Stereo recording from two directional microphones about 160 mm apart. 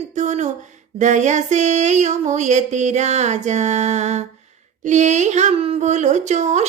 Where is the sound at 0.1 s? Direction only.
45° right (ahead or behind).